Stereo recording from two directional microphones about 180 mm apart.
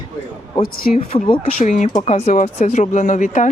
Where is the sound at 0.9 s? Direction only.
35° left (ahead or behind).